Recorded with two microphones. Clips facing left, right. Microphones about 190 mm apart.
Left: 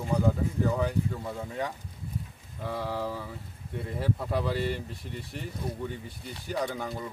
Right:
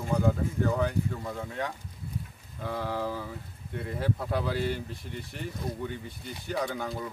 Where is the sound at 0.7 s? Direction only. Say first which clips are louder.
Even; 5° left (ahead or behind).